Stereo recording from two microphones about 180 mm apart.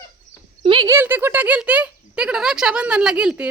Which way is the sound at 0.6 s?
30° right (ahead or behind).